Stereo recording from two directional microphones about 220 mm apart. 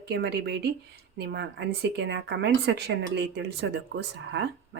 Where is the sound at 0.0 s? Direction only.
50° right (ahead or behind).